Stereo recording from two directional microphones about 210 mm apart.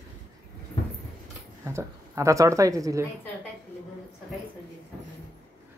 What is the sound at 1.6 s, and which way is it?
Speech, 15° right (ahead or behind).